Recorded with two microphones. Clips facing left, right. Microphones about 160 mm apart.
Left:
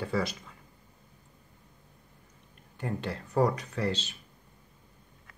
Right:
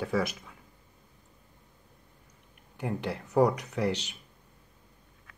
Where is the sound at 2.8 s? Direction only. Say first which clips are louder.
Right 1 dB; 10° right (ahead or behind).